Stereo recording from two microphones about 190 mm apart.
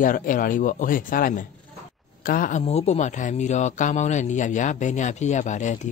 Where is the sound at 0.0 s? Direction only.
45° left (ahead or behind).